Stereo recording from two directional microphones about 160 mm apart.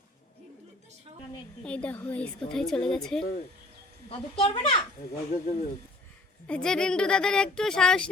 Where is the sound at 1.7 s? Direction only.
10° left (ahead or behind).